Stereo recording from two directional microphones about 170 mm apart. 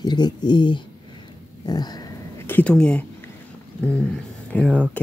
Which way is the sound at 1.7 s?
25° left (ahead or behind).